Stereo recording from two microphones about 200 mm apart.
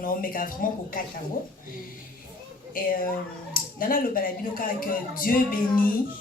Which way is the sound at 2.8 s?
45° left (ahead or behind).